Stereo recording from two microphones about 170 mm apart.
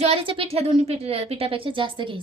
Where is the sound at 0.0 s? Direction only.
35° right (ahead or behind).